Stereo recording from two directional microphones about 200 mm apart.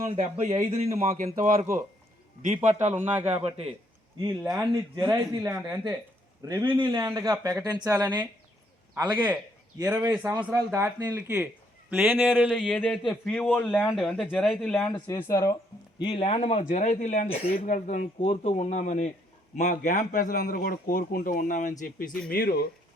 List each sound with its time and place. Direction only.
0.2 s a man's voice: 35° right (ahead or behind)
2.6 s a man's voice: 35° right (ahead or behind)
3.0 s speech: 10° right (ahead or behind)
3.2 s a man's voice: 30° right (ahead or behind)
4.5 s speech: 15° right (ahead or behind); by 14.8 s 5° left (ahead or behind)
15.0 s speech: 15° left (ahead or behind)
16.0 s speech: 25° left (ahead or behind); by 22.5 s 50° left (ahead or behind)